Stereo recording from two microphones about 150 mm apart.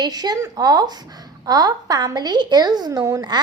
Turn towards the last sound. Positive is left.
turn(degrees=-25)  # may be behind; listen again after turning